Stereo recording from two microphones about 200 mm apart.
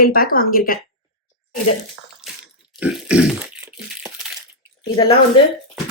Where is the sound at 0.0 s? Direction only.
45° left (ahead or behind).